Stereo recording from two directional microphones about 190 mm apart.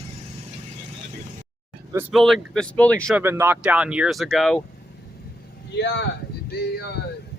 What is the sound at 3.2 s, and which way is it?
Speech, 10° right (ahead or behind).